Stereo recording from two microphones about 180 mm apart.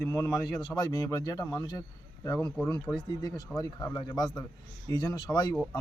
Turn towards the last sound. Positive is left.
turn(degrees=20)  # may be behind; listen again after turning